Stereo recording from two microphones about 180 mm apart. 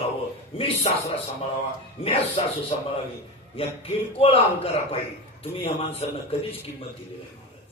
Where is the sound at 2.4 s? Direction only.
30° left (ahead or behind).